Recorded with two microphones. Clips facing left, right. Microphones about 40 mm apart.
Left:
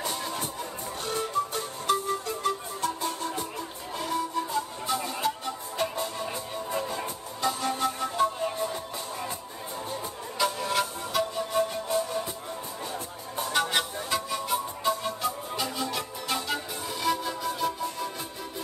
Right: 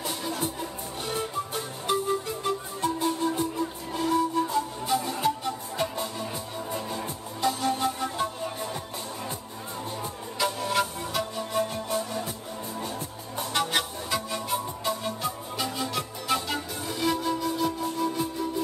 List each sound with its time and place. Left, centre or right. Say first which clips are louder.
1.1 s music: left 3 dB; centre
3.5 s music: right 5 dB; centre
7.4 s music: right 2 dB; centre
10.4 s music: right 1 dB; centre
13.6 s music: even; centre